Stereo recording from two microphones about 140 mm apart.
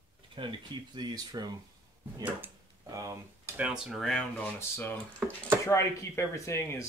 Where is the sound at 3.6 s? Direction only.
5° right (ahead or behind).